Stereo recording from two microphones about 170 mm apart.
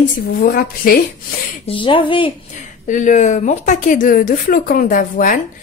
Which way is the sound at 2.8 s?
50° left (ahead or behind).